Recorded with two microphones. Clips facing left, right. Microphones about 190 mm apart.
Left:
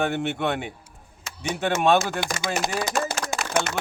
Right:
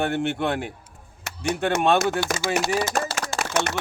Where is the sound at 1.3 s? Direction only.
70° right (ahead or behind).